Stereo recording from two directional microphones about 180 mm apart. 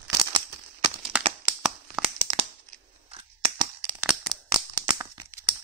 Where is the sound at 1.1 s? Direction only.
5° right (ahead or behind).